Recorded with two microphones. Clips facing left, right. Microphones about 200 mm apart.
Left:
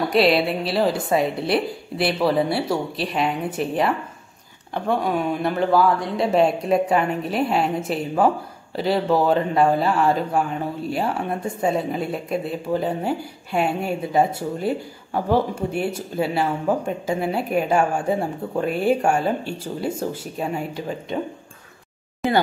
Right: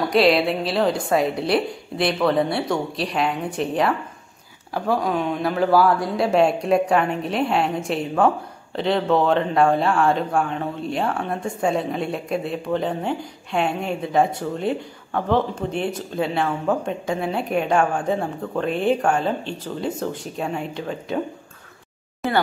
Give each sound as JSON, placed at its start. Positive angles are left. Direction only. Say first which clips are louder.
{"t": 0.1, "sound": "a woman's voice", "louder": "right 1 dB", "side_deg": 0}